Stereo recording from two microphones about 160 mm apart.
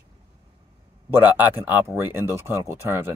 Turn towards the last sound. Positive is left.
turn(degrees=-15)  # may be behind; listen again after turning